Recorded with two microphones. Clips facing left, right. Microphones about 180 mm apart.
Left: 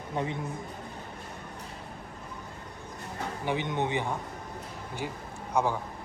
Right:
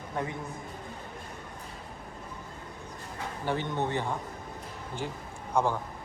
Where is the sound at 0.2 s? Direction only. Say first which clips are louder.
Left 2 dB; 20° left (ahead or behind).